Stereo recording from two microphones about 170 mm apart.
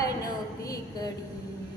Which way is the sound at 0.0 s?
20° left (ahead or behind).